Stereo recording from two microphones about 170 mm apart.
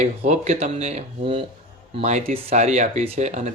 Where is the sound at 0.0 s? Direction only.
40° right (ahead or behind).